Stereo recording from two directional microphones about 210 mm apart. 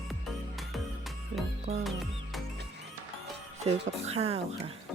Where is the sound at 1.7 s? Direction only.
30° right (ahead or behind).